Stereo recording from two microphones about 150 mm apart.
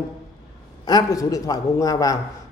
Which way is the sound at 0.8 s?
25° left (ahead or behind).